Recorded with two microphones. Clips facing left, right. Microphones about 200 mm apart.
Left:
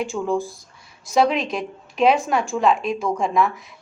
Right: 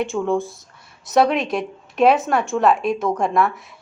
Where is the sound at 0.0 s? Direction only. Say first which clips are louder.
Right 2 dB; centre (ahead or behind).